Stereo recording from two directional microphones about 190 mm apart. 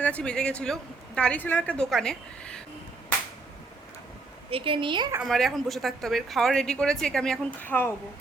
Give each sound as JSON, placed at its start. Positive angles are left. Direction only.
{"t": 0.0, "sound": "speech", "side_deg": 5}
{"t": 4.5, "sound": "a woman's voice", "side_deg": -30}
{"t": 5.2, "sound": "speech", "side_deg": 0}